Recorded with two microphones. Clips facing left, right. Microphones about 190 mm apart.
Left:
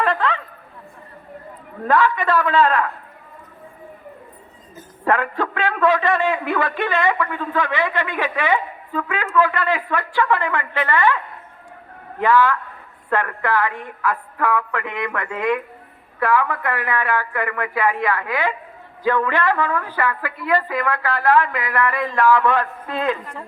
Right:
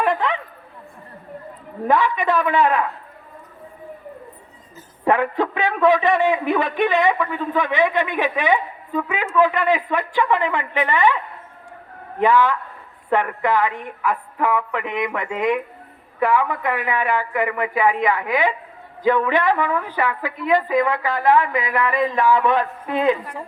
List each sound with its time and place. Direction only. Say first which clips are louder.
0.0 s a sound: even; 15° right (ahead or behind)
1.8 s a man's voice: left 1 dB; 15° right (ahead or behind)
5.0 s a man's voice: right 2 dB; 15° right (ahead or behind)
12.2 s a man's voice: even; 20° right (ahead or behind)